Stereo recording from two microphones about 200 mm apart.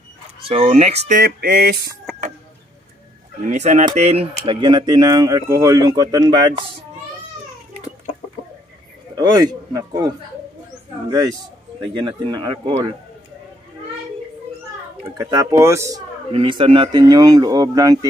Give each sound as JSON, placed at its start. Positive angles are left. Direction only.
{"t": 0.5, "sound": "speech", "side_deg": -30}
{"t": 3.4, "sound": "speech", "side_deg": -35}
{"t": 9.1, "sound": "a man's voice", "side_deg": -20}
{"t": 15.1, "sound": "speech", "side_deg": -20}
{"t": 16.3, "sound": "speech", "side_deg": -25}